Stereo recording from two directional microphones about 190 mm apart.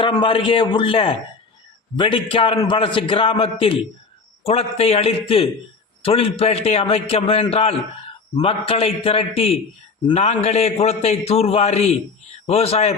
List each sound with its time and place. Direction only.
0.0 s a man's voice: 25° left (ahead or behind)